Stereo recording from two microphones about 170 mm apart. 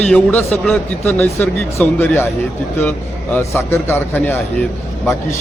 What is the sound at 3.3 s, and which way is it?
A man's voice, 15° left (ahead or behind).